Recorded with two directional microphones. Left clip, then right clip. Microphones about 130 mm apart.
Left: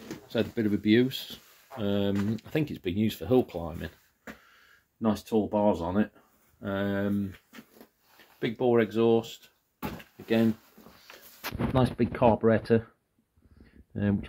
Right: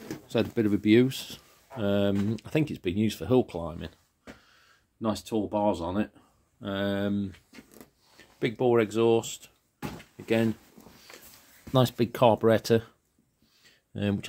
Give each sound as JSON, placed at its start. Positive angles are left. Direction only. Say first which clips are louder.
{"t": 0.3, "sound": "speech", "louder": "right 2 dB", "side_deg": -50}
{"t": 5.0, "sound": "speech", "louder": "left 2 dB", "side_deg": 0}
{"t": 6.6, "sound": "speech", "louder": "right 1 dB", "side_deg": -20}
{"t": 8.4, "sound": "speech", "louder": "right 1 dB", "side_deg": -55}
{"t": 10.2, "sound": "speech", "louder": "even", "side_deg": -60}
{"t": 11.7, "sound": "speech", "louder": "right 3 dB", "side_deg": -45}
{"t": 13.9, "sound": "speech", "louder": "even", "side_deg": -25}